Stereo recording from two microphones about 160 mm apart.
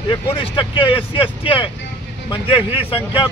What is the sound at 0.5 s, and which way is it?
Speech, 30° left (ahead or behind).